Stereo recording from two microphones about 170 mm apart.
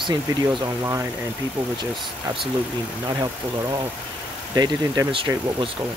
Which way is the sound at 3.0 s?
20° right (ahead or behind).